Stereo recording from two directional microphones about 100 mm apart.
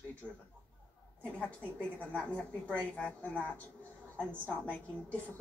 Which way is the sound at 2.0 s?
10° left (ahead or behind).